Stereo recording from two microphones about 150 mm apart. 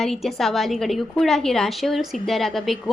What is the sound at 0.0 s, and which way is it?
A woman's voice, centre (ahead or behind).